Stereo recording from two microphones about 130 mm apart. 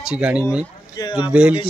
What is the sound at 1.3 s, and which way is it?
Speech, 10° right (ahead or behind).